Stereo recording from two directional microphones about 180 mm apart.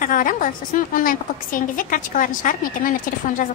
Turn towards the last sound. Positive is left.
turn(degrees=50)  # may be behind; listen again after turning